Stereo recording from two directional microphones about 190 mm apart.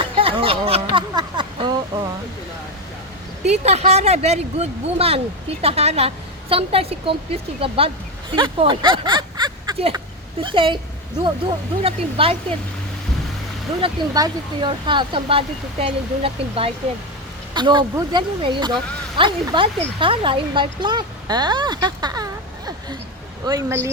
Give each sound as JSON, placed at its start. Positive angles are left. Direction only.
{"t": 0.0, "sound": "a sound", "side_deg": -30}
{"t": 3.4, "sound": "a woman's voice", "side_deg": -35}
{"t": 13.8, "sound": "speech", "side_deg": -20}